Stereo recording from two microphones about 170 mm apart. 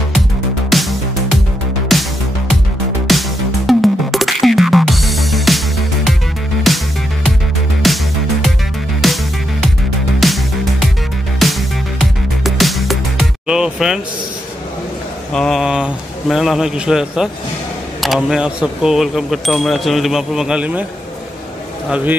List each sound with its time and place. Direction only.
0.7 s music: centre (ahead or behind)
3.1 s music: centre (ahead or behind)
6.7 s music: centre (ahead or behind)
15.3 s speech: centre (ahead or behind)
21.8 s a man's voice: 5° right (ahead or behind)